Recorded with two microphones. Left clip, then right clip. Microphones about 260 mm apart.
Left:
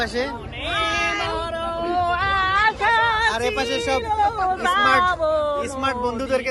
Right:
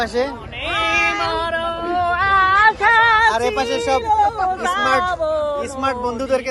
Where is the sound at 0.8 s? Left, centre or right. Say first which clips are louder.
Right 5 dB; centre.